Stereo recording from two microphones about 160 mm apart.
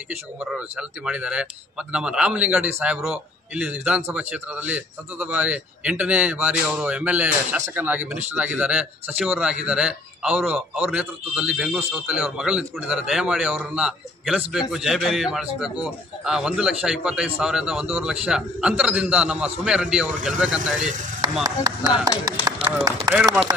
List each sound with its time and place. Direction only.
0.4 s a man's voice: 5° right (ahead or behind)
21.2 s speech: 25° right (ahead or behind)